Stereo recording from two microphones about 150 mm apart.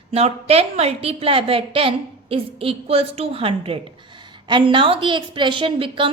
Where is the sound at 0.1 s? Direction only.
40° right (ahead or behind).